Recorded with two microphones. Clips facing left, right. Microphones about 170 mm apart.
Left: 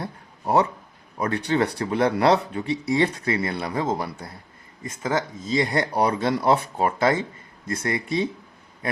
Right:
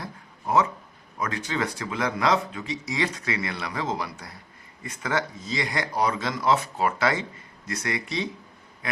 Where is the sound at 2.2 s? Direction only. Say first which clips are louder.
Left 5 dB; 65° left (ahead or behind).